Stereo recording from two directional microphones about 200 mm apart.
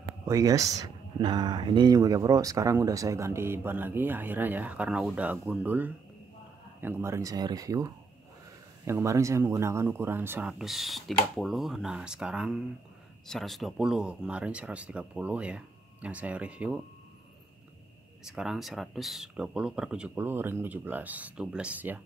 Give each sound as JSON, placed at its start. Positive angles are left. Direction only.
{"t": 0.2, "sound": "speech", "side_deg": -15}
{"t": 18.2, "sound": "speech", "side_deg": 0}